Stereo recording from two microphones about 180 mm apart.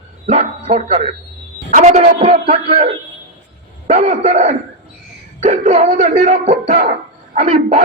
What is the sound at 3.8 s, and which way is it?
Speech, 40° right (ahead or behind).